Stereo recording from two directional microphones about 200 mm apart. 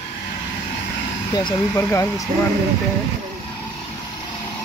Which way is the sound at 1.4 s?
15° left (ahead or behind).